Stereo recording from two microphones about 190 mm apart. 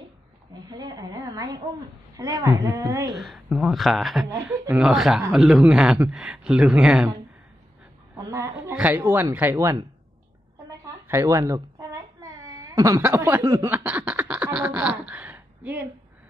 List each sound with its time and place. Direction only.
0.7 s a sound: 20° right (ahead or behind)
2.1 s a woman's voice: 20° right (ahead or behind)
3.2 s speech: centre (ahead or behind)
8.2 s a sound: 15° right (ahead or behind)
8.6 s a woman's voice: 10° right (ahead or behind)
11.1 s speech: 15° right (ahead or behind)